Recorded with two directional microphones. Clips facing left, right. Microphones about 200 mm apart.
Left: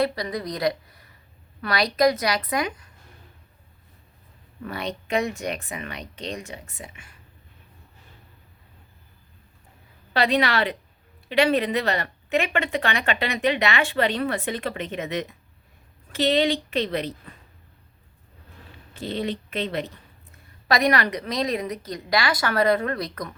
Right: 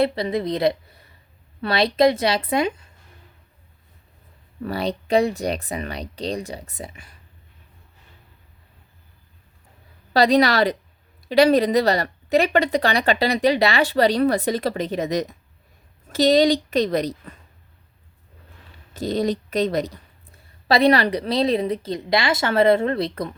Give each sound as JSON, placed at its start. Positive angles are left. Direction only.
{"t": 0.0, "sound": "a woman's voice", "side_deg": -25}
{"t": 4.6, "sound": "a woman's voice", "side_deg": -35}
{"t": 10.1, "sound": "a woman's voice", "side_deg": -35}
{"t": 18.9, "sound": "a woman's voice", "side_deg": -40}
{"t": 20.7, "sound": "a woman's voice", "side_deg": -30}